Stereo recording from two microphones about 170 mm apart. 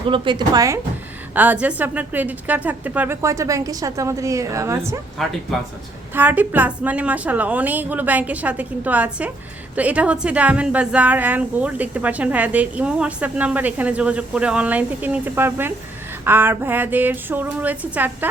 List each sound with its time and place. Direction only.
0.1 s speech: 25° right (ahead or behind)
1.4 s a woman's voice: 10° right (ahead or behind)
5.1 s speech: centre (ahead or behind)
6.1 s a woman's voice: 10° right (ahead or behind)